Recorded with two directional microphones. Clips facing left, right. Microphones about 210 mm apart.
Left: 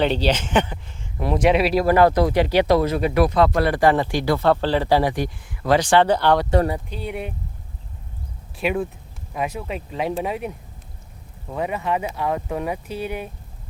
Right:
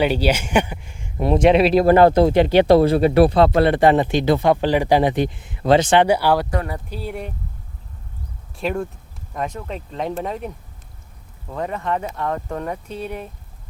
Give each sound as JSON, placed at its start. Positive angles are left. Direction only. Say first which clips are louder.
{"t": 0.0, "sound": "speech", "louder": "right 2 dB", "side_deg": -10}
{"t": 1.2, "sound": "speech", "louder": "right 4 dB", "side_deg": -25}
{"t": 6.1, "sound": "speech", "louder": "right 1 dB", "side_deg": -10}
{"t": 6.5, "sound": "speech", "louder": "left 6 dB", "side_deg": 30}
{"t": 6.9, "sound": "speech", "louder": "even", "side_deg": 0}
{"t": 8.5, "sound": "speech", "louder": "left 1 dB", "side_deg": 5}